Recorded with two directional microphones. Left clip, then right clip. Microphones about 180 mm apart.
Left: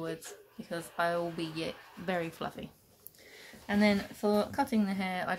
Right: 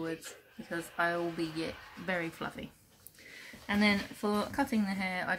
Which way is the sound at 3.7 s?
40° left (ahead or behind).